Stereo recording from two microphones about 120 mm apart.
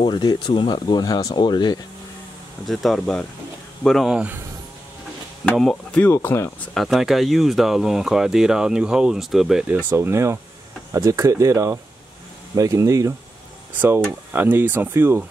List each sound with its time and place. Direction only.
0.0 s speech: 40° left (ahead or behind)
2.6 s speech: centre (ahead or behind)
5.4 s speech: 5° left (ahead or behind)
6.1 s speech: 20° left (ahead or behind)
6.6 s speech: centre (ahead or behind); by 15.2 s 20° right (ahead or behind)